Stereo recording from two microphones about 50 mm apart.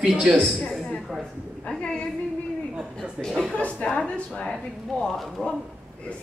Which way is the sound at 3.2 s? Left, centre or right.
Centre.